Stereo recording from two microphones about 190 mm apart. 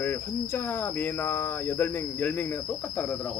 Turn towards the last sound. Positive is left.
turn(degrees=10)  # may be behind; listen again after turning